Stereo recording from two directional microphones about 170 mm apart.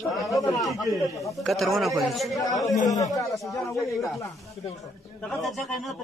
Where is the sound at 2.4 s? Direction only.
20° left (ahead or behind).